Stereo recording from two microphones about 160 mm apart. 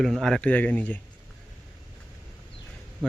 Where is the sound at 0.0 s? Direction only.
Centre (ahead or behind).